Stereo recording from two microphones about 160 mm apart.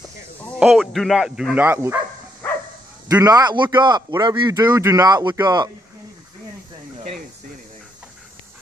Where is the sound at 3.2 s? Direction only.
25° right (ahead or behind).